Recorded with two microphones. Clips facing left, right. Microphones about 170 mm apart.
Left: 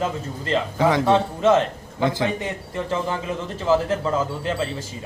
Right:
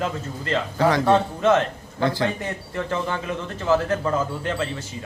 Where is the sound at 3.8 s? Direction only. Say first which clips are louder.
Even; 25° left (ahead or behind).